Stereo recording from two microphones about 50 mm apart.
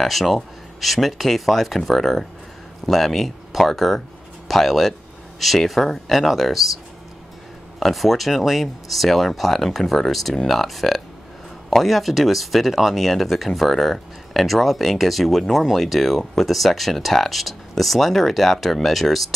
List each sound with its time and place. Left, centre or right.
0.0 s speech: centre
7.8 s speech: centre